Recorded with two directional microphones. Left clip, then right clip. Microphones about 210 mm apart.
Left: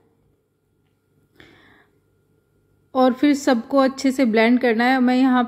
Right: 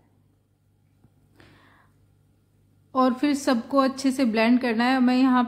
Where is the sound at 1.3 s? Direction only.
15° left (ahead or behind).